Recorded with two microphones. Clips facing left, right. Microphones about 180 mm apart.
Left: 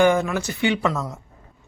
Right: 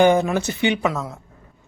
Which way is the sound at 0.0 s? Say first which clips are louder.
Right 2 dB; 20° right (ahead or behind).